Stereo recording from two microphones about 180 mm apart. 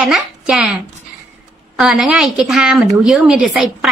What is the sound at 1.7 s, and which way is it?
A woman's voice, centre (ahead or behind).